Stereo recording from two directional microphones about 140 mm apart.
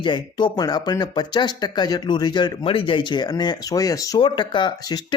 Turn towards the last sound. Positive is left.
turn(degrees=30)  # may be behind; listen again after turning